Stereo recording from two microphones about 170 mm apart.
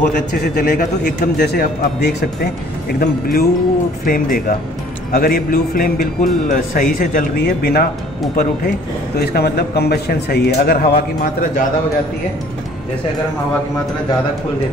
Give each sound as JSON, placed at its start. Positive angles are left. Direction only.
{"t": 0.0, "sound": "a man's voice", "side_deg": 50}
{"t": 9.2, "sound": "a man's voice", "side_deg": 70}